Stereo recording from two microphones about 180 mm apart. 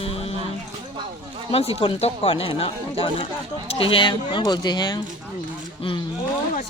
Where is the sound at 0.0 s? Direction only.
35° left (ahead or behind).